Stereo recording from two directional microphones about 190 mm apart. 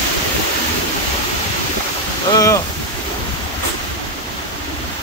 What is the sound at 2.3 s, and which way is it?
Speech, 15° left (ahead or behind).